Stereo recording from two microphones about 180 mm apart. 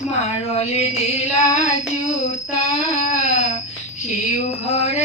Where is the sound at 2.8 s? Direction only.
40° left (ahead or behind).